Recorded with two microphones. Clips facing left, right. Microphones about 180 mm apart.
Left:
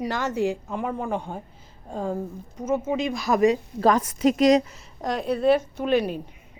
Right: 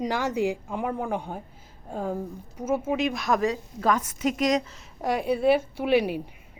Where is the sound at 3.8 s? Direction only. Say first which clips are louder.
Left 5 dB; 35° left (ahead or behind).